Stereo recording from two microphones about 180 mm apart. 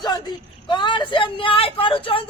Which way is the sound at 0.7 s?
25° left (ahead or behind).